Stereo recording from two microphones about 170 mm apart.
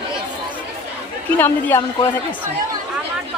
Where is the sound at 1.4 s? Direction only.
10° left (ahead or behind).